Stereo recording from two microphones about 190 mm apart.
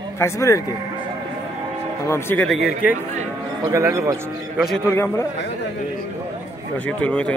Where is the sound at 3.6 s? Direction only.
15° right (ahead or behind).